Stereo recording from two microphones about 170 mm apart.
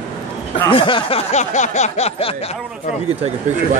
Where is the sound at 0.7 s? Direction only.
30° left (ahead or behind).